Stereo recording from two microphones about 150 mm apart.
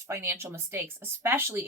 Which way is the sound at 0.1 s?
15° right (ahead or behind).